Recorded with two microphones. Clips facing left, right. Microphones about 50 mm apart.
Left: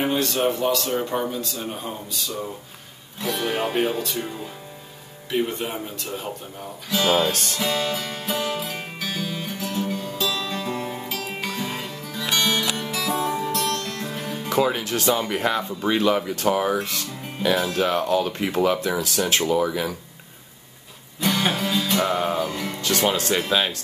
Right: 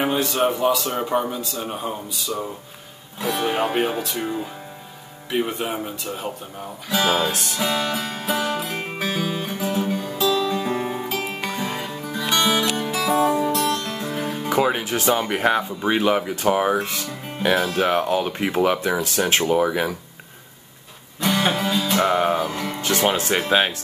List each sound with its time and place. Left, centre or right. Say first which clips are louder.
0.0 s speech: right 1 dB; centre
4.2 s speech: right 4 dB; centre
6.9 s music: even; centre
8.7 s music: right 5 dB; right
14.3 s speech: right 1 dB; centre; by 20.0 s right
21.2 s music: right 2 dB; centre
22.0 s speech: right 3 dB; centre
22.5 s music: right 2 dB; centre
22.8 s speech: right 2 dB; right